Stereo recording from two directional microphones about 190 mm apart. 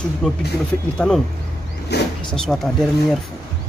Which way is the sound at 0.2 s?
Centre (ahead or behind).